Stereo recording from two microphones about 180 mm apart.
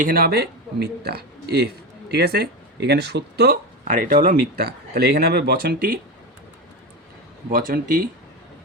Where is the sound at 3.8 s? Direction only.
45° right (ahead or behind).